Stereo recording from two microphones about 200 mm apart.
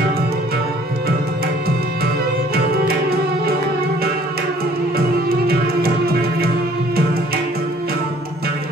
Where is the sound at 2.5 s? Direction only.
50° right (ahead or behind).